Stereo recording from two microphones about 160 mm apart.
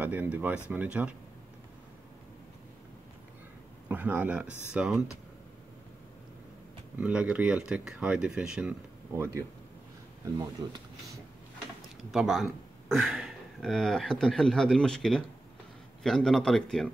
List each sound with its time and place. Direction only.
0.0 s speech: 10° right (ahead or behind)
3.9 s speech: 10° right (ahead or behind)
7.0 s speech: 5° right (ahead or behind)
9.1 s speech: 15° right (ahead or behind)
10.4 s speech: 20° right (ahead or behind)
12.1 s speech: centre (ahead or behind)